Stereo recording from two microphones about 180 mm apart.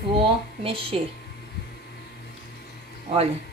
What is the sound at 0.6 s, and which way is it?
Speech, 30° right (ahead or behind).